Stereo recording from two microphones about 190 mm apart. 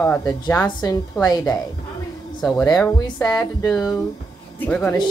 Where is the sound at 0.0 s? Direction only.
15° left (ahead or behind).